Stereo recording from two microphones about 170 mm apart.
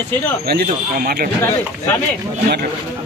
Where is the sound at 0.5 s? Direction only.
60° right (ahead or behind).